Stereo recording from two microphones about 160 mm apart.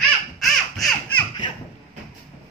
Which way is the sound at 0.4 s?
Centre (ahead or behind).